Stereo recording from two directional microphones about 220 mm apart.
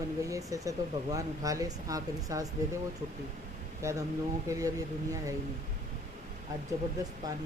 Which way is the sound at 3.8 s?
15° right (ahead or behind).